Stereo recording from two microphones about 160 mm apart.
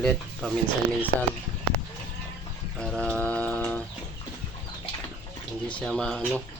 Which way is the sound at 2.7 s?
5° left (ahead or behind).